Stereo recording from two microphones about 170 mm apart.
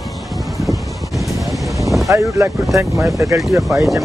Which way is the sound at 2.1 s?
20° right (ahead or behind).